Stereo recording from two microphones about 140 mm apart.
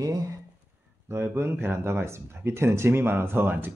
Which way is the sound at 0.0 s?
25° right (ahead or behind).